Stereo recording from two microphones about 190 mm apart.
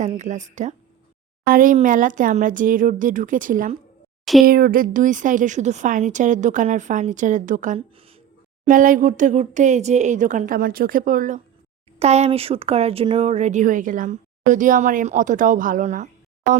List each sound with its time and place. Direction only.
0.0 s speech: 40° right (ahead or behind)
7.8 s speech: 30° right (ahead or behind)
8.6 s speech: 45° right (ahead or behind)
11.9 s speech: 35° right (ahead or behind)